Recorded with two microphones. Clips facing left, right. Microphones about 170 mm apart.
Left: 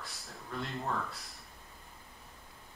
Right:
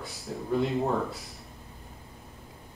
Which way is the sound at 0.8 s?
20° right (ahead or behind).